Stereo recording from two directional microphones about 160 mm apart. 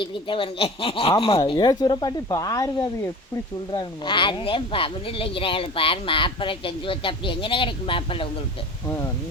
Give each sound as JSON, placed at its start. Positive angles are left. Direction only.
{"t": 0.0, "sound": "speech", "side_deg": 30}